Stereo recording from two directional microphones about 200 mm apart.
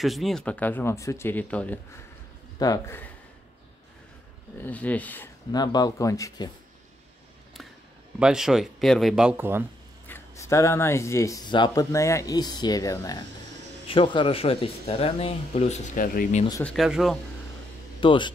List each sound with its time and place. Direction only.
0.0 s speech: centre (ahead or behind)
4.6 s speech: 10° left (ahead or behind)
5.5 s speech: 20° left (ahead or behind)
8.2 s speech: 5° right (ahead or behind)
10.0 s speech: 10° left (ahead or behind); by 16.4 s 40° left (ahead or behind)
16.6 s speech: centre (ahead or behind)
18.0 s speech: 25° left (ahead or behind)